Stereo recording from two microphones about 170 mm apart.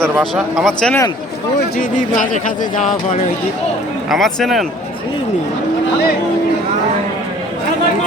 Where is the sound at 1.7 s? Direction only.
55° left (ahead or behind).